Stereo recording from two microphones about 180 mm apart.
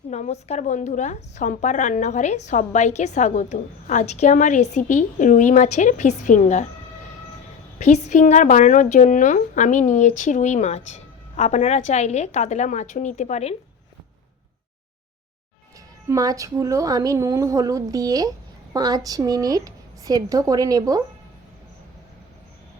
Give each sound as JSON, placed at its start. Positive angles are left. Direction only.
{"t": 0.1, "sound": "a woman's voice", "side_deg": 40}
{"t": 7.8, "sound": "a woman's voice", "side_deg": 40}
{"t": 16.0, "sound": "a woman's voice", "side_deg": -20}